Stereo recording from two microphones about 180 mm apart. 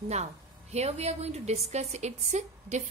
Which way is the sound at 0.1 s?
35° right (ahead or behind).